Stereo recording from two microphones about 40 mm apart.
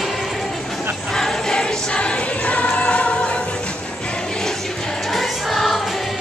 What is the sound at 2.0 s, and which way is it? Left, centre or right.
Music, left.